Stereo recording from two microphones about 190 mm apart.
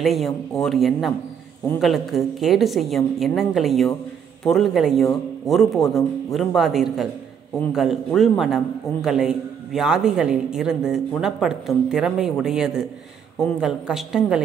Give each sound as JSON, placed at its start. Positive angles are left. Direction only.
{"t": 0.0, "sound": "a man's voice", "side_deg": 0}